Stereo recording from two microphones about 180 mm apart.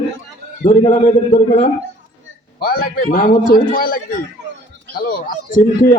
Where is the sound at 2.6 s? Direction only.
55° left (ahead or behind).